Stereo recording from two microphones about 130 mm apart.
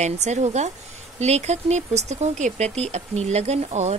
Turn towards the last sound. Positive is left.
turn(degrees=-55)  # may be behind; listen again after turning